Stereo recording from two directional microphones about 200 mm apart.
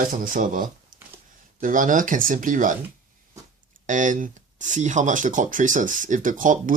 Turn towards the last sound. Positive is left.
turn(degrees=-40)  # may be behind; listen again after turning